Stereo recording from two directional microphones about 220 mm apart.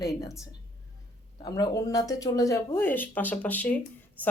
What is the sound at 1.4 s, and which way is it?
A woman's voice, 20° left (ahead or behind).